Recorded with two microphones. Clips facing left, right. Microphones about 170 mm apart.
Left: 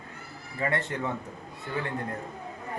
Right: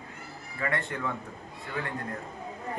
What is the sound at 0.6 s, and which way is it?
Speech, 30° left (ahead or behind).